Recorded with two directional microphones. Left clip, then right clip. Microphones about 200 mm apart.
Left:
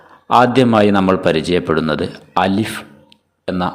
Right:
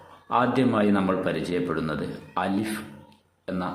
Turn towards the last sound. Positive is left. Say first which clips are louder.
# left 11 dB
turn(degrees=45)  # may be behind; listen again after turning